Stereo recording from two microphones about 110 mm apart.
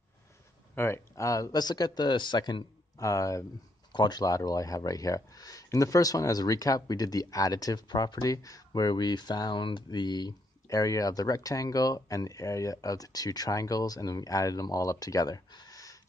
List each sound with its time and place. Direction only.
0.7 s speech: 25° left (ahead or behind)
3.9 s speech: 40° left (ahead or behind)